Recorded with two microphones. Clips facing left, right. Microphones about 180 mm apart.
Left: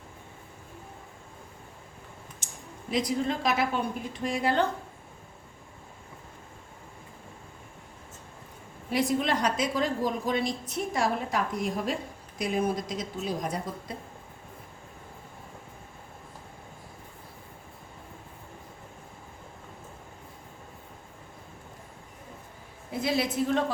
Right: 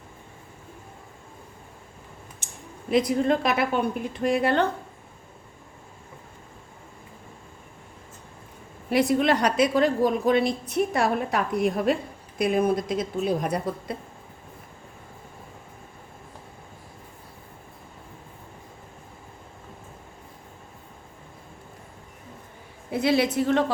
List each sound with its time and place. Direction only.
2.4 s a sound: 60° right (ahead or behind)
2.9 s a woman's voice: 55° right (ahead or behind)
8.9 s a woman's voice: 65° right (ahead or behind)
22.9 s a woman's voice: 70° right (ahead or behind)